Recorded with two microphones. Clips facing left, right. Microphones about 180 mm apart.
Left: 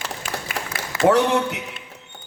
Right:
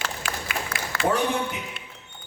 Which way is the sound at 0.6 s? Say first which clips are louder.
Even; 75° left (ahead or behind).